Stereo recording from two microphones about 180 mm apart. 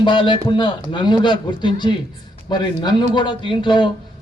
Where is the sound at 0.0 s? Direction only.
25° left (ahead or behind).